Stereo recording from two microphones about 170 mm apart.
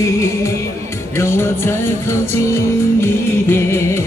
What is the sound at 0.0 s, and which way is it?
Music, 15° left (ahead or behind).